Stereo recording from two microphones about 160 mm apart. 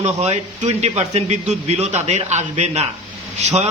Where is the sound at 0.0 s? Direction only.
45° right (ahead or behind).